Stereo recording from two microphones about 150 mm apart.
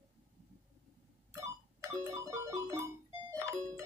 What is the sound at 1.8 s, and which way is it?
Ringtone, 20° right (ahead or behind).